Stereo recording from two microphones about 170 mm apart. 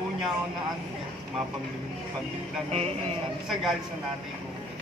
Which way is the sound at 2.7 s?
35° right (ahead or behind).